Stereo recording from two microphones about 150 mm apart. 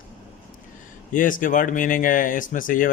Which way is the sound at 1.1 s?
65° left (ahead or behind).